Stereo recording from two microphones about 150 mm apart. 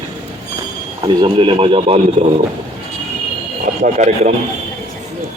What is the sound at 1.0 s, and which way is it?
Speech, 30° right (ahead or behind).